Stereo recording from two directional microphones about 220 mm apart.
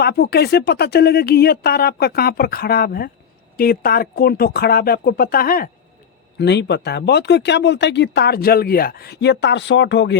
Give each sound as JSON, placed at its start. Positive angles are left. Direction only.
{"t": 0.0, "sound": "speech", "side_deg": 50}